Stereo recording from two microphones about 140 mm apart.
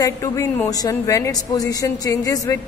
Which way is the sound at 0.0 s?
25° left (ahead or behind).